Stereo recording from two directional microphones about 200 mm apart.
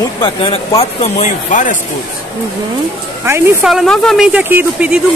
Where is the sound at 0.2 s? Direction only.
25° left (ahead or behind).